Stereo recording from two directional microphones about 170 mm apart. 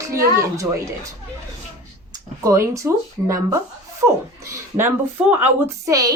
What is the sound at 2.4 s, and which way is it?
A woman's voice, 20° right (ahead or behind).